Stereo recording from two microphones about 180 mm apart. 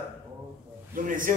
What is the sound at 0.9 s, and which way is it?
Speech, 50° right (ahead or behind).